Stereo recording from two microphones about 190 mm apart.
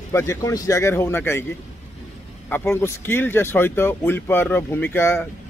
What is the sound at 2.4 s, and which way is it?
Speech, 10° left (ahead or behind).